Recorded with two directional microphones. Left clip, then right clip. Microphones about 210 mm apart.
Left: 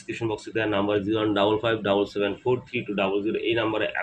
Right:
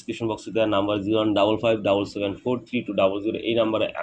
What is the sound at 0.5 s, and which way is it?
Speech, 5° left (ahead or behind).